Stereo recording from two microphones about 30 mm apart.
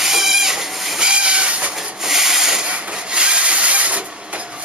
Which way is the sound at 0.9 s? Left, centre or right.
Right.